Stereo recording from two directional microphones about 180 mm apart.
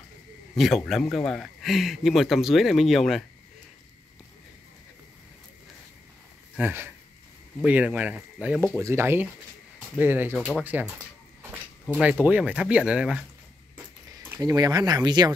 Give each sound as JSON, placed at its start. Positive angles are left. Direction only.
{"t": 0.6, "sound": "speech", "side_deg": 0}
{"t": 6.5, "sound": "speech", "side_deg": -10}
{"t": 10.3, "sound": "speech", "side_deg": 5}
{"t": 10.6, "sound": "speech", "side_deg": -10}
{"t": 11.9, "sound": "speech", "side_deg": -5}
{"t": 14.3, "sound": "speech", "side_deg": -20}